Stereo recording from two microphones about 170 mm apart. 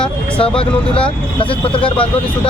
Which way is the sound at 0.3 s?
30° left (ahead or behind).